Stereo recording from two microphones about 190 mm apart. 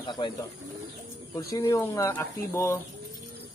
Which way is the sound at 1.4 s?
15° left (ahead or behind).